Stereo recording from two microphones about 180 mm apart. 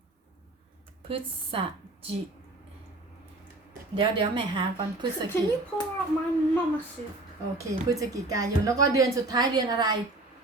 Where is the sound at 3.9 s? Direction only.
25° right (ahead or behind).